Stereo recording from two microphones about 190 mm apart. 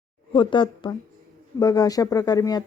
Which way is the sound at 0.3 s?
25° left (ahead or behind).